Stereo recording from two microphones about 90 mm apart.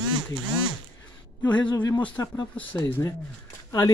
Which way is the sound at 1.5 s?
55° left (ahead or behind).